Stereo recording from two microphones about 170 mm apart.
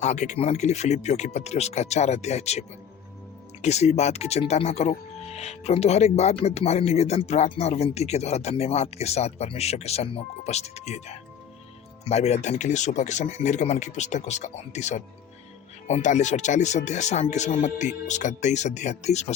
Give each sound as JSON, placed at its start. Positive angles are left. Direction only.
{"t": 0.0, "sound": "speech", "side_deg": 45}